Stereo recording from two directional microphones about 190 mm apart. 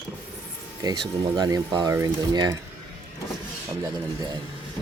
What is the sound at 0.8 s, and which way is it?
Speech, 20° right (ahead or behind).